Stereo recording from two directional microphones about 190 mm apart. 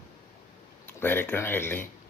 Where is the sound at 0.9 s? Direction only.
10° left (ahead or behind).